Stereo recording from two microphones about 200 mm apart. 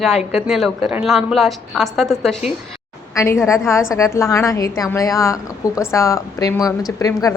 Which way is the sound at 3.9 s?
15° left (ahead or behind).